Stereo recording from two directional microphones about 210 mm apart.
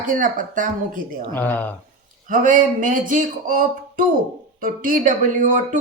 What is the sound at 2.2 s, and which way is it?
Speech, 40° right (ahead or behind).